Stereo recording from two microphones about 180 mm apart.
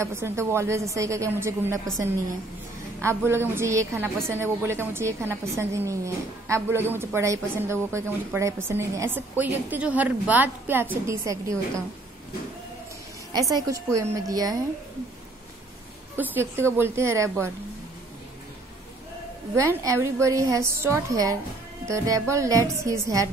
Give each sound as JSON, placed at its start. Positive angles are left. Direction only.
{"t": 0.0, "sound": "a woman's voice", "side_deg": -15}
{"t": 3.0, "sound": "a woman's voice", "side_deg": -15}
{"t": 13.3, "sound": "a woman's voice", "side_deg": -20}
{"t": 16.2, "sound": "a woman's voice", "side_deg": -15}
{"t": 19.5, "sound": "a woman's voice", "side_deg": -15}